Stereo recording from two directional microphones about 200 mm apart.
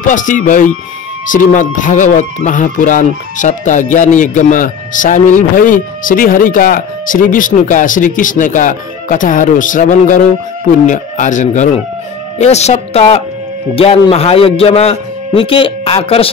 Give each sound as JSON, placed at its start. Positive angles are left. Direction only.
{"t": 0.0, "sound": "a man's voice", "side_deg": 40}